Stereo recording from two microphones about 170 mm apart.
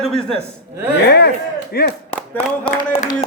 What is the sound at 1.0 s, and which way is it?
Speech, 75° left (ahead or behind).